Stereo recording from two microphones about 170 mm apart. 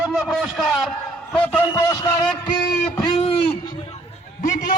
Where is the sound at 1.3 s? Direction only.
10° left (ahead or behind).